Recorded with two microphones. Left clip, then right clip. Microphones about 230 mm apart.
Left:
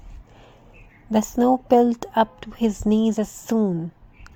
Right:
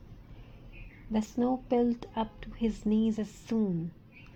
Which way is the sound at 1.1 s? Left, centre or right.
Left.